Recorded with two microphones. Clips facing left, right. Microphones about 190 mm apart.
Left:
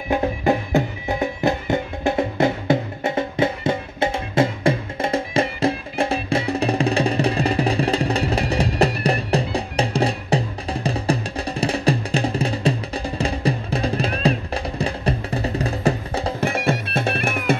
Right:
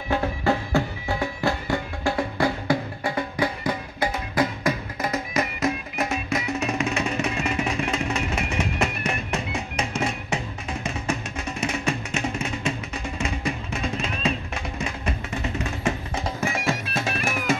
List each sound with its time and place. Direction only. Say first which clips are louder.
0.1 s music: left 4 dB; 20° left (ahead or behind); by 16.4 s 35° left (ahead or behind)
16.4 s music: left 4 dB; 60° left (ahead or behind)